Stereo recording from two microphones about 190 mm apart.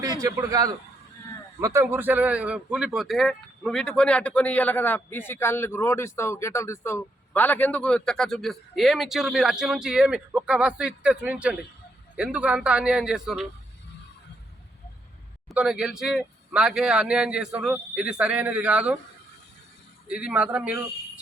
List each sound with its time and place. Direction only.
0.0 s a man's voice: 20° right (ahead or behind); by 13.5 s centre (ahead or behind)
15.4 s a man's voice: 5° right (ahead or behind)
20.1 s a man's voice: 5° right (ahead or behind)